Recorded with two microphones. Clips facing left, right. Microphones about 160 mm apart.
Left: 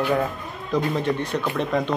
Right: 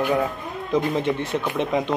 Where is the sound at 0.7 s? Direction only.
25° right (ahead or behind).